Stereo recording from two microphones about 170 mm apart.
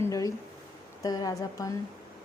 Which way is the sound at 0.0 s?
20° left (ahead or behind).